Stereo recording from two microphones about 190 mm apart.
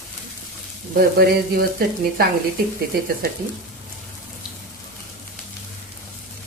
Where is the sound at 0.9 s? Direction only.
55° right (ahead or behind).